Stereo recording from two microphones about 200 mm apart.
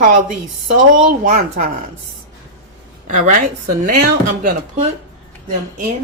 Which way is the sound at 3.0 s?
40° right (ahead or behind).